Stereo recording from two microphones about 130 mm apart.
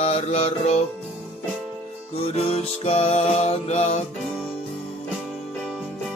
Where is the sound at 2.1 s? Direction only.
50° left (ahead or behind).